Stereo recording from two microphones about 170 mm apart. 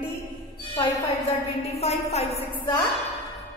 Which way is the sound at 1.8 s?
40° left (ahead or behind).